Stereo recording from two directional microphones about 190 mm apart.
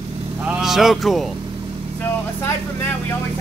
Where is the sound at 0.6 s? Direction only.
Centre (ahead or behind).